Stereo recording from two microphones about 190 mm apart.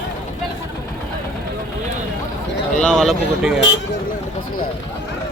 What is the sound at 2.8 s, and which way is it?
Speech, centre (ahead or behind).